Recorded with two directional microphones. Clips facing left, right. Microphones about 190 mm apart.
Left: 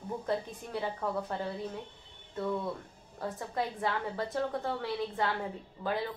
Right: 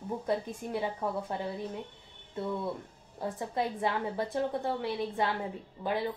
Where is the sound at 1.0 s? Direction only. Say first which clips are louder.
Right 1 dB; 15° right (ahead or behind).